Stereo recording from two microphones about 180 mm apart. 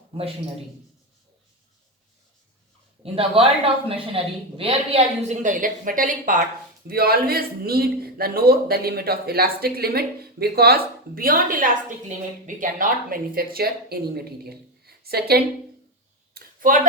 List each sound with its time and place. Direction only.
0.1 s a woman's voice: 30° right (ahead or behind)
3.0 s a woman's voice: 30° right (ahead or behind); by 15.4 s 60° right (ahead or behind)
16.3 s a sound: 50° right (ahead or behind)